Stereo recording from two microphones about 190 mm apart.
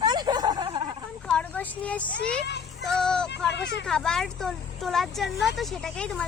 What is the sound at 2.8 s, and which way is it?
Speech, 5° left (ahead or behind).